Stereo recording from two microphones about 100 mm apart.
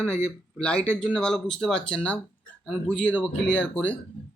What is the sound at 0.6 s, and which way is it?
Speech, 10° left (ahead or behind).